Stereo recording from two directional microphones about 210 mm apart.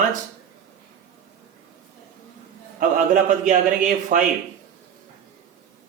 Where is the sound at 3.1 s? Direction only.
40° right (ahead or behind).